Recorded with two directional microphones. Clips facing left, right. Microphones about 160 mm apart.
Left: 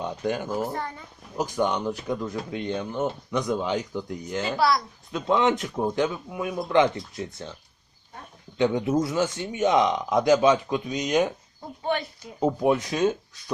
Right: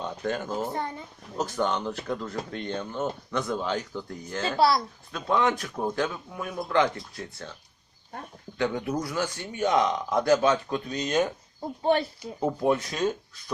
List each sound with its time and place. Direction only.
0.0 s speech: 10° left (ahead or behind)
0.7 s speech: 20° right (ahead or behind)
1.4 s speech: 15° left (ahead or behind)
4.5 s speech: 30° right (ahead or behind)
5.1 s speech: 20° left (ahead or behind)
8.5 s speech: 20° left (ahead or behind)
11.8 s speech: 35° right (ahead or behind)
12.4 s speech: 15° left (ahead or behind)